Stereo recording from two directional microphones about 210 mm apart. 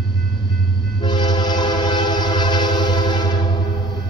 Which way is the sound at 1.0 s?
20° left (ahead or behind).